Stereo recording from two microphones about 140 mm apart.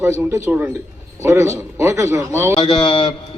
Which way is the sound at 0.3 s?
20° right (ahead or behind).